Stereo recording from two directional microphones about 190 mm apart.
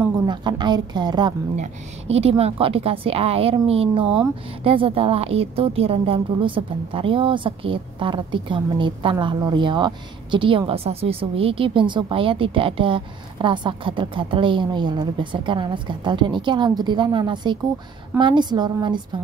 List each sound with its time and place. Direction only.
0.3 s a woman's voice: 25° right (ahead or behind)
1.6 s a woman's voice: 35° right (ahead or behind)